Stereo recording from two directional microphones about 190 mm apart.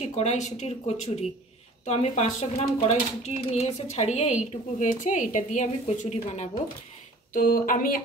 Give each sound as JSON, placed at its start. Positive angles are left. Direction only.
{"t": 0.0, "sound": "speech", "side_deg": 35}
{"t": 7.3, "sound": "speech", "side_deg": 45}